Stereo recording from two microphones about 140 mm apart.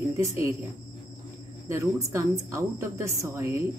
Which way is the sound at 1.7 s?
20° right (ahead or behind).